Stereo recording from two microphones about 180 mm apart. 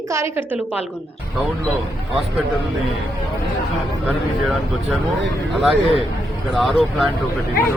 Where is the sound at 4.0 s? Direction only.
Centre (ahead or behind).